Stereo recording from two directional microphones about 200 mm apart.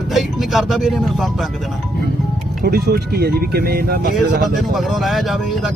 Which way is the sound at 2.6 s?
55° right (ahead or behind).